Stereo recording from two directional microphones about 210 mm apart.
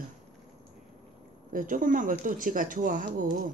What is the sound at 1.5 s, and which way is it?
Speech, 40° right (ahead or behind).